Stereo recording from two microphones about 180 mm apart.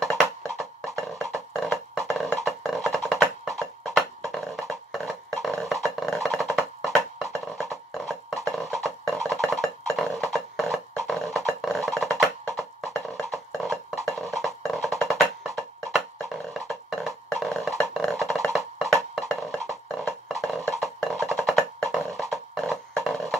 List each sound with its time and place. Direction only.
0.0 s music: centre (ahead or behind)
20.0 s a sound: centre (ahead or behind)
20.6 s music: centre (ahead or behind)